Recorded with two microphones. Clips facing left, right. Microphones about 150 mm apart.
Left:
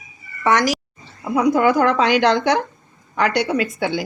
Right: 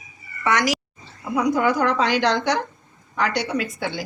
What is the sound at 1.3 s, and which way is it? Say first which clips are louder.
Speech: left 4 dB; 90° left.